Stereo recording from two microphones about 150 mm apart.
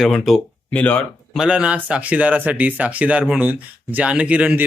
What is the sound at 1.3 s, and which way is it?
Speech, 5° right (ahead or behind).